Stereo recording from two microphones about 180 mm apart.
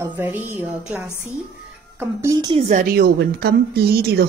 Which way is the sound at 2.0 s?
15° right (ahead or behind).